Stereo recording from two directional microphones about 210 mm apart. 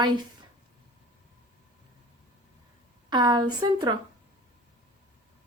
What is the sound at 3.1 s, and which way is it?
Speech, 20° right (ahead or behind).